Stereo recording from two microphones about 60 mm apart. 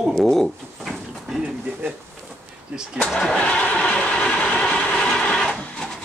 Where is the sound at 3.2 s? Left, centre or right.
Centre.